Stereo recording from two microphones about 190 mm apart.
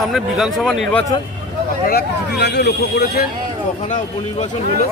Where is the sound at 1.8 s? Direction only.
60° left (ahead or behind).